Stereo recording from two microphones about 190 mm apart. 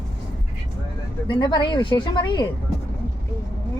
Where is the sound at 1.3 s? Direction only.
25° left (ahead or behind).